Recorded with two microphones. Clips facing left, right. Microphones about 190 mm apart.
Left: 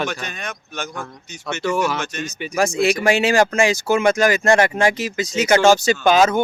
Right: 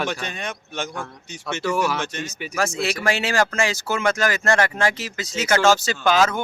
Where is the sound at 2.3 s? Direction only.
5° right (ahead or behind).